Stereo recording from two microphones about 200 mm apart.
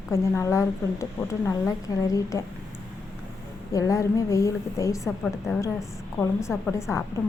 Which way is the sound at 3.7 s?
15° left (ahead or behind).